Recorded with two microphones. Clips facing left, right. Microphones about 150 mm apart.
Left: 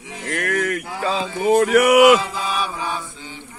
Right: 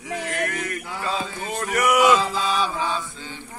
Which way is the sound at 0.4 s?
65° left (ahead or behind).